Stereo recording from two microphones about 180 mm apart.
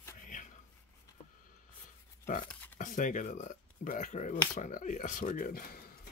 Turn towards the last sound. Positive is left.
turn(degrees=50)  # may be behind; listen again after turning